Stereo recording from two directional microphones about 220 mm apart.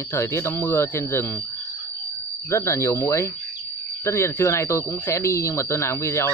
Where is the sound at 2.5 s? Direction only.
10° left (ahead or behind).